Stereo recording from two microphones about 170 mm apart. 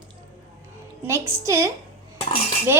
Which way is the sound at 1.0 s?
15° right (ahead or behind).